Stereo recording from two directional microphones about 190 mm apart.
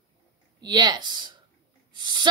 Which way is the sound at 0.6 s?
20° right (ahead or behind).